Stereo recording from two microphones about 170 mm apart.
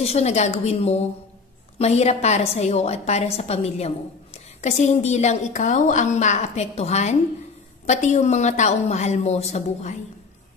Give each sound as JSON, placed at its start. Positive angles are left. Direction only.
{"t": 0.0, "sound": "a woman's voice", "side_deg": 40}